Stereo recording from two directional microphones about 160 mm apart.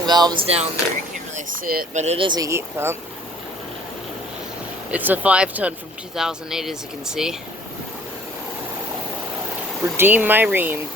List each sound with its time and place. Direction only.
0.0 s speech: 25° right (ahead or behind)
0.4 s speech: 40° right (ahead or behind)
1.4 s speech: 65° right (ahead or behind)
1.9 s speech: 45° right (ahead or behind)
2.2 s speech: 25° right (ahead or behind)
4.9 s speech: 10° right (ahead or behind)
10.0 s speech: 10° right (ahead or behind)